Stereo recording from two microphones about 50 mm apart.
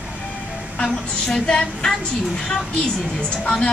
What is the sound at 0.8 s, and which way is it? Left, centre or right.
A woman's voice, centre.